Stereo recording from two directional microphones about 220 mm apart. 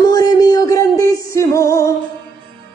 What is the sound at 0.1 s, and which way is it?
Music, 15° left (ahead or behind).